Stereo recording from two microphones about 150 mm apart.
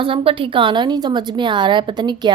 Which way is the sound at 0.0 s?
35° right (ahead or behind).